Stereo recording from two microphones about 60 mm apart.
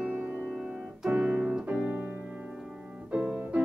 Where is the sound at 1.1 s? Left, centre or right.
Right.